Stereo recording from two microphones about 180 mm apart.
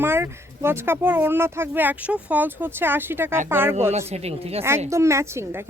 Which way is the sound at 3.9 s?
35° right (ahead or behind).